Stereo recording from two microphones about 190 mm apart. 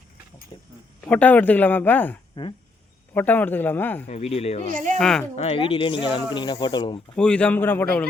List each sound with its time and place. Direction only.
0.5 s speech: 20° left (ahead or behind)
1.0 s speech: 10° left (ahead or behind)
2.4 s speech: 25° left (ahead or behind)
3.2 s speech: 10° left (ahead or behind)
4.0 s speech: 35° left (ahead or behind)
4.7 s speech: 40° right (ahead or behind)
4.9 s speech: centre (ahead or behind)
5.4 s speech: 30° left (ahead or behind)
7.2 s speech: 5° left (ahead or behind)